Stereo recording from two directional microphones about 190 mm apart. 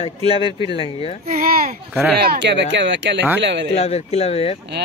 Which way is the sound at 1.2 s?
45° right (ahead or behind).